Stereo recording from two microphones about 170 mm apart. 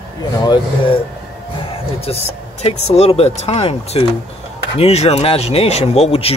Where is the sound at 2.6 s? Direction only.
35° left (ahead or behind).